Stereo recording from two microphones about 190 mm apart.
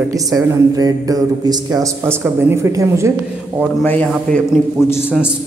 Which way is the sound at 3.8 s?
10° left (ahead or behind).